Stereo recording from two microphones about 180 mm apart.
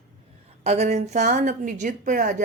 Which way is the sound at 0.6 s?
40° right (ahead or behind).